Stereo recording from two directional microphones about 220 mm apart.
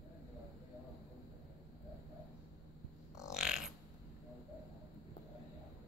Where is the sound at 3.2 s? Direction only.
5° right (ahead or behind).